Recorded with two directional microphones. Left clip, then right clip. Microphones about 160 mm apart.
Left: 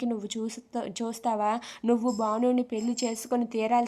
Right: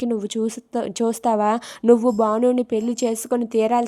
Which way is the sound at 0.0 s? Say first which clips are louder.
Right 9 dB; 30° right (ahead or behind).